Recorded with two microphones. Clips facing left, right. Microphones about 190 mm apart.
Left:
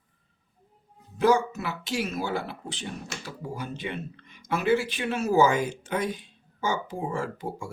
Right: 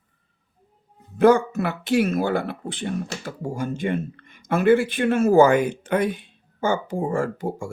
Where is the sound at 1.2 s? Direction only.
55° right (ahead or behind).